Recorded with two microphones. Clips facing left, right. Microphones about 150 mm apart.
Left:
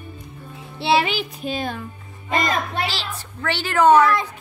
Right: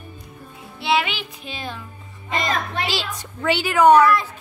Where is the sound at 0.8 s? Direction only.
35° left (ahead or behind); by 1.8 s 50° left (ahead or behind).